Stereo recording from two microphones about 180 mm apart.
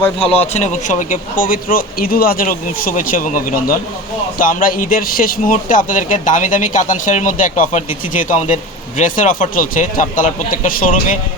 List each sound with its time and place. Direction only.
0.3 s speech: 40° left (ahead or behind)